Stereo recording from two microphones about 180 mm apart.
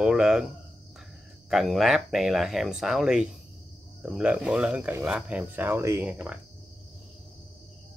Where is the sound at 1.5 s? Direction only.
Centre (ahead or behind).